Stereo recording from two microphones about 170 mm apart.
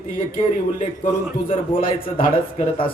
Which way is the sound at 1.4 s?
30° left (ahead or behind).